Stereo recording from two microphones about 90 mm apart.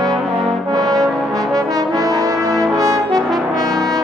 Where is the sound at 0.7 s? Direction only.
45° right (ahead or behind).